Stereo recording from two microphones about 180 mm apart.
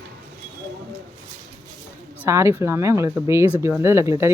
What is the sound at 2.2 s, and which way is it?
Speech, 15° right (ahead or behind).